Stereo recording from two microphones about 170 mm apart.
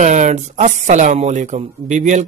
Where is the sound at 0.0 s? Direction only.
45° right (ahead or behind).